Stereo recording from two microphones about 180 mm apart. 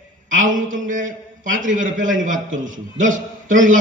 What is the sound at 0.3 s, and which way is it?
A man's voice, 45° right (ahead or behind).